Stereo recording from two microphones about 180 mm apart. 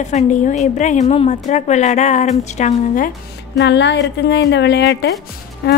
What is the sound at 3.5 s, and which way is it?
A woman's voice, 75° left (ahead or behind).